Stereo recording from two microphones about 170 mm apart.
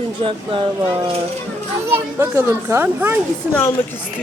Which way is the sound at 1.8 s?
15° right (ahead or behind).